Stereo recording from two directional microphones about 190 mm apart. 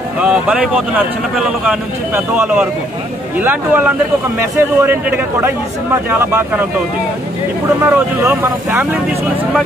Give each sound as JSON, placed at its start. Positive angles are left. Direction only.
{"t": 0.2, "sound": "speech", "side_deg": -5}
{"t": 7.8, "sound": "speech", "side_deg": -10}